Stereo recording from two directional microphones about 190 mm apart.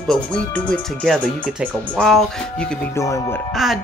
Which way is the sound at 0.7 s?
5° left (ahead or behind).